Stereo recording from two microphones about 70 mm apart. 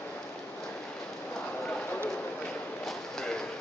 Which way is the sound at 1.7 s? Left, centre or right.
Centre.